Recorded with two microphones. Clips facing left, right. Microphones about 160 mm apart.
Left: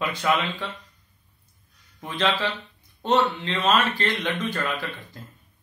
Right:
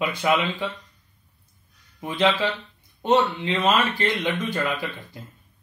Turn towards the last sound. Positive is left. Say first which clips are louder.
# right 2 dB
turn(degrees=-15)  # may be behind; listen again after turning